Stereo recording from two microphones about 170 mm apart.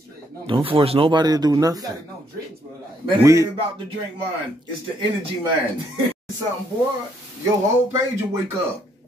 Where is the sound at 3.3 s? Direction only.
20° right (ahead or behind).